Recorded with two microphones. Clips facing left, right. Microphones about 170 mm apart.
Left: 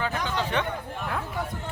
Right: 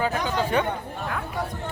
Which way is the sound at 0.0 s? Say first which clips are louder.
Right 4 dB; 10° right (ahead or behind).